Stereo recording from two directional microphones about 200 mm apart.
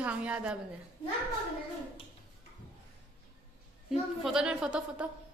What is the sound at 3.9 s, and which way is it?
A woman's voice, centre (ahead or behind).